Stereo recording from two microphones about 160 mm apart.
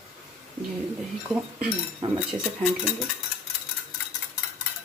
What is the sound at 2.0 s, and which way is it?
Speech, 35° right (ahead or behind).